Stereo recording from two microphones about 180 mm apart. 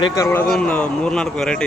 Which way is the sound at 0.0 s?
15° left (ahead or behind).